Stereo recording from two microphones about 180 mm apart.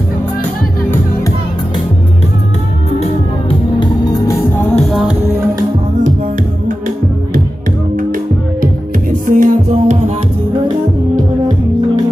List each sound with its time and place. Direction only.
3.0 s music: 30° left (ahead or behind)
4.7 s music: centre (ahead or behind)
7.9 s music: 50° right (ahead or behind)